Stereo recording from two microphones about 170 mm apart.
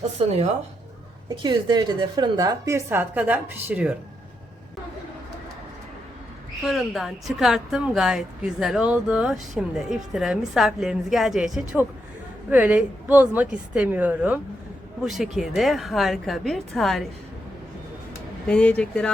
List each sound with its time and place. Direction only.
1.4 s a woman's voice: 25° right (ahead or behind); by 3.9 s 10° right (ahead or behind)
6.7 s a woman's voice: centre (ahead or behind)
18.4 s a woman's voice: 5° left (ahead or behind)